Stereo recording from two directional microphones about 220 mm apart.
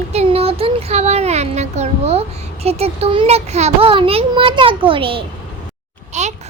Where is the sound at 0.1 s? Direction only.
30° right (ahead or behind).